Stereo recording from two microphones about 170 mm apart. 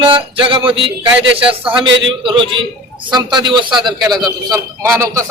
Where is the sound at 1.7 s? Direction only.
30° right (ahead or behind).